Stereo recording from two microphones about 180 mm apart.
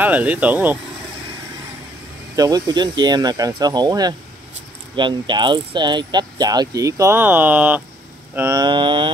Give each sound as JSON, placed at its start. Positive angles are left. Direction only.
{"t": 0.0, "sound": "speech", "side_deg": -10}
{"t": 2.3, "sound": "speech", "side_deg": -20}